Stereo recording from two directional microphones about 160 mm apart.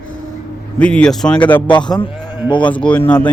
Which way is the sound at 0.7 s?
5° left (ahead or behind).